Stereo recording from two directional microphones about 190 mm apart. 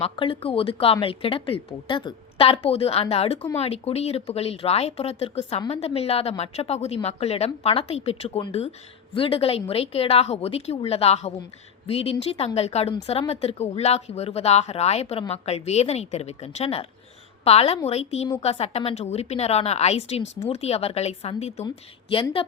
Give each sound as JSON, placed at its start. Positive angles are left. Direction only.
{"t": 0.0, "sound": "a woman's voice", "side_deg": 30}